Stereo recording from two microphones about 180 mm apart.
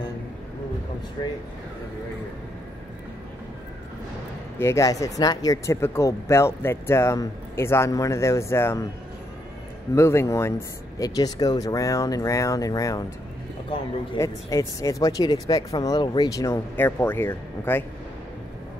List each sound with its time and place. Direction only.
1.2 s speech: 25° left (ahead or behind)
4.6 s speech: 15° left (ahead or behind)
9.9 s speech: 15° left (ahead or behind)
14.1 s speech: 15° left (ahead or behind)